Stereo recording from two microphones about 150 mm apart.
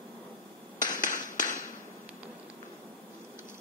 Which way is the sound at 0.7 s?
60° left (ahead or behind).